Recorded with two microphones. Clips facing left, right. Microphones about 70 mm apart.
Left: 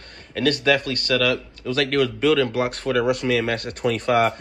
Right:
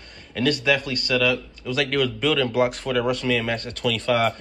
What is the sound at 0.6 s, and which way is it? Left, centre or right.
Speech, centre.